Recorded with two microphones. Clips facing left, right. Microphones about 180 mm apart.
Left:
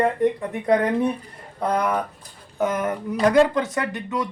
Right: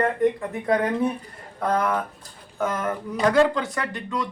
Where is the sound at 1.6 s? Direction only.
20° left (ahead or behind).